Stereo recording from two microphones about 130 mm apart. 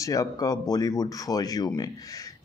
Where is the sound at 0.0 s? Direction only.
25° left (ahead or behind).